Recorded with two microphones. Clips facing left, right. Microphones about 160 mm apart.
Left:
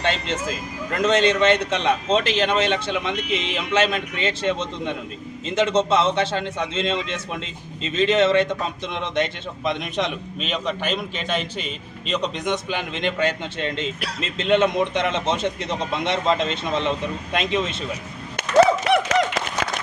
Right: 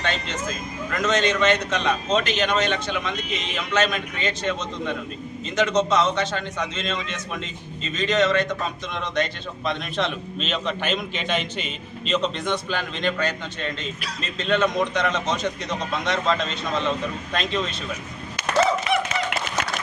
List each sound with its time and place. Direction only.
0.0 s a man's voice: 30° left (ahead or behind); by 12.1 s centre (ahead or behind)
12.1 s a man's voice: 15° left (ahead or behind)
18.6 s clapping: 80° left